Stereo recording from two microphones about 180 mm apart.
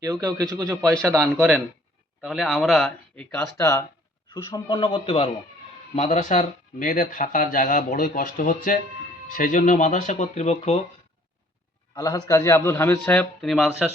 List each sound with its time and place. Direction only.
0.0 s a man's voice: 20° right (ahead or behind)
0.5 s a man's voice: 10° right (ahead or behind)
1.0 s speech: 5° left (ahead or behind)
1.3 s speech: 5° right (ahead or behind)
3.6 s a man's voice: 15° left (ahead or behind)
5.9 s speech: 40° left (ahead or behind)
11.9 s a man's voice: 20° left (ahead or behind); by 13.8 s centre (ahead or behind)